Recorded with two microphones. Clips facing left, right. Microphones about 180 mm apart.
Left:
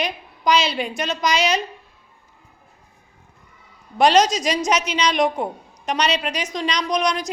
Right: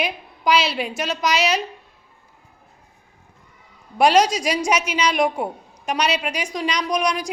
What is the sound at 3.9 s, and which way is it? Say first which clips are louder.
A woman's voice: even; 10° right (ahead or behind).